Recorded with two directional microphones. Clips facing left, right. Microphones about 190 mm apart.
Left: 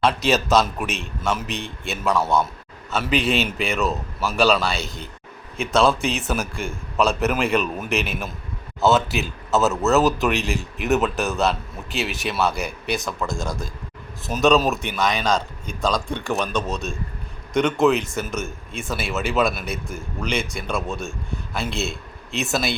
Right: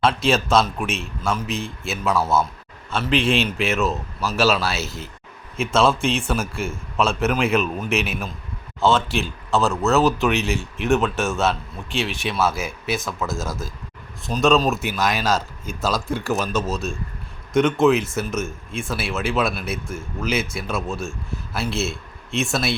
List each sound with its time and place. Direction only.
0.0 s speech: centre (ahead or behind)